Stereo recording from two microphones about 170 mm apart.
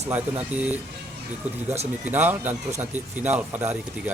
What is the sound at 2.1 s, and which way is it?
Speech, 10° right (ahead or behind).